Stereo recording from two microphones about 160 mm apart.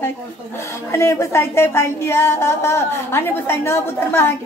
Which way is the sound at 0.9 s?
20° left (ahead or behind).